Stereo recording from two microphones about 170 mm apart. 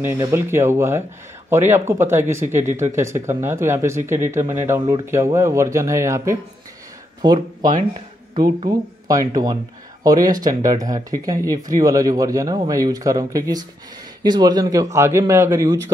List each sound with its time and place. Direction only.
0.0 s speech: 15° right (ahead or behind)
7.9 s speech: 30° right (ahead or behind)